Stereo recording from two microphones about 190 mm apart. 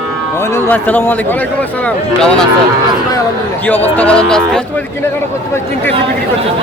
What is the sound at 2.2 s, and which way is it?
Speech, 5° left (ahead or behind).